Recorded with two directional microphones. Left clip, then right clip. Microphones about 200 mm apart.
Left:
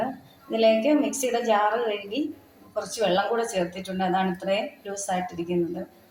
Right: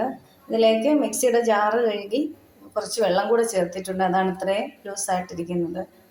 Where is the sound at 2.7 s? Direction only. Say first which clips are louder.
Right 3 dB; 25° right (ahead or behind).